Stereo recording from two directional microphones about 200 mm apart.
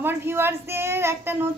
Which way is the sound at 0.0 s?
10° right (ahead or behind).